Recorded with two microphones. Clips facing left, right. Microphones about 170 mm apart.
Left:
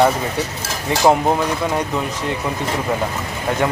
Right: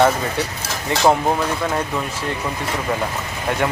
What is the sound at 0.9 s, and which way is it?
Speech, 15° left (ahead or behind).